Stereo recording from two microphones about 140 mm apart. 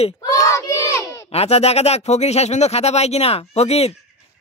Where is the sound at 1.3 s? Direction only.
50° left (ahead or behind).